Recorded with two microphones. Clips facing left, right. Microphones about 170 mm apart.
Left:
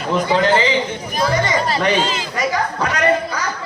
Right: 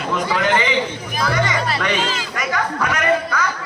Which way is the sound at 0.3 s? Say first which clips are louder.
Left 4 dB; 25° left (ahead or behind).